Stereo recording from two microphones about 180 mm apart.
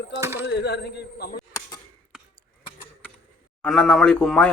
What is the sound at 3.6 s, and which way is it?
Speech, 5° left (ahead or behind).